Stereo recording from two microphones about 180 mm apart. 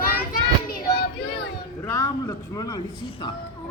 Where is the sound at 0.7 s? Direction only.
60° left (ahead or behind).